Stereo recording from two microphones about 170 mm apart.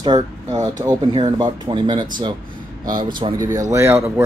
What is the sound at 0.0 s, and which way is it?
Speech, 25° right (ahead or behind).